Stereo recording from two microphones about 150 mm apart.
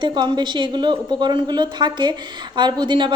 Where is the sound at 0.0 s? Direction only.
30° right (ahead or behind).